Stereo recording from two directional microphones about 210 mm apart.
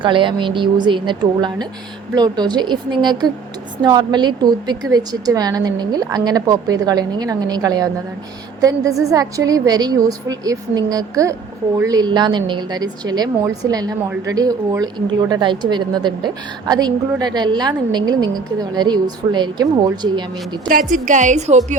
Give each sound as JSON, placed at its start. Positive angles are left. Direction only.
{"t": 0.0, "sound": "a woman's voice", "side_deg": -25}
{"t": 20.7, "sound": "a woman's voice", "side_deg": -40}